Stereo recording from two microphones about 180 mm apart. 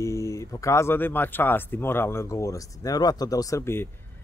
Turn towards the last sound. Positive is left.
turn(degrees=15)  # may be behind; listen again after turning